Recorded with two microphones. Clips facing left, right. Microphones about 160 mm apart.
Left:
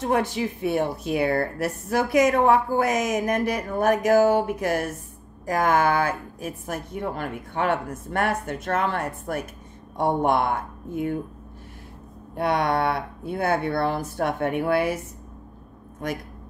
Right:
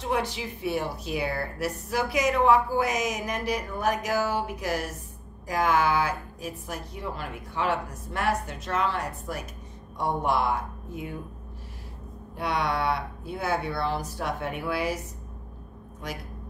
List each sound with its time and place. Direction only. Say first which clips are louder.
0.0 s a woman's voice: left 5 dB; 50° left (ahead or behind)
12.4 s speech: left 5 dB; 50° left (ahead or behind)
16.0 s a woman's voice: left 7 dB; 50° left (ahead or behind)